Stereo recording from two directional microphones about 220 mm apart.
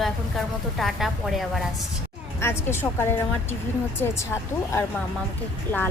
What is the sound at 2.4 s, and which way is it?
A woman's voice, 10° left (ahead or behind).